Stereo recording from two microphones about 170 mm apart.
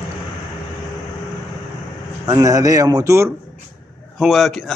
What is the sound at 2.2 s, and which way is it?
Speech, 20° right (ahead or behind).